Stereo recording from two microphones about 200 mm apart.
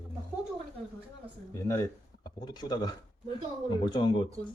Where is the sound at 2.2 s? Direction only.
20° left (ahead or behind).